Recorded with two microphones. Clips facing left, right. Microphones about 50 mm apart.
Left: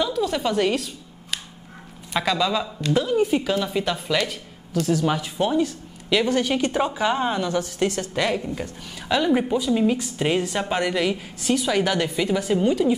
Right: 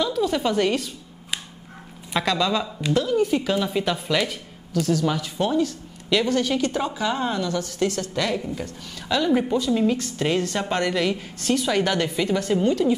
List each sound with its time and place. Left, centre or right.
0.0 s a woman's voice: centre
2.1 s a woman's voice: centre
2.9 s a woman's voice: centre
3.4 s a woman's voice: centre
4.8 s a woman's voice: centre